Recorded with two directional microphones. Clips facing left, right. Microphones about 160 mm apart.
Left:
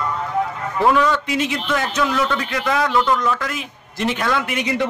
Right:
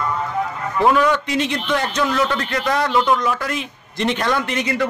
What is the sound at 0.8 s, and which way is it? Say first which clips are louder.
Speech: right 1 dB; 10° right (ahead or behind).